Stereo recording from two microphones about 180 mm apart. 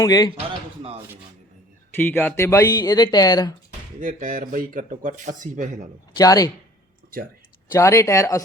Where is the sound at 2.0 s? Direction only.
10° left (ahead or behind).